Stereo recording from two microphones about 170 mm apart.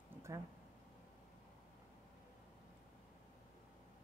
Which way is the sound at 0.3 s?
15° right (ahead or behind).